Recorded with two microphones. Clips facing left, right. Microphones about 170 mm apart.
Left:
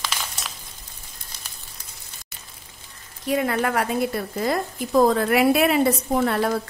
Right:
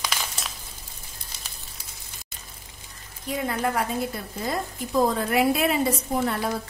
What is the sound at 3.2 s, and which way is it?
A woman's voice, 75° left (ahead or behind).